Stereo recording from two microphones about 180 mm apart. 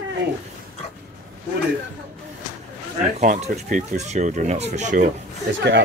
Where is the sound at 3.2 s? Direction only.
45° right (ahead or behind).